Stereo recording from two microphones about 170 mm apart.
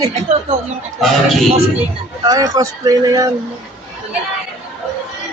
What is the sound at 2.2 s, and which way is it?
Speech, 20° right (ahead or behind).